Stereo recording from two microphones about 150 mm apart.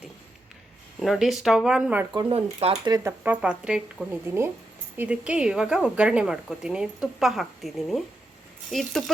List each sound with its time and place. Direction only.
0.9 s a woman's voice: centre (ahead or behind)
2.3 s speech: 40° right (ahead or behind)
2.9 s speech: 20° right (ahead or behind)
3.4 s a woman's voice: 5° right (ahead or behind)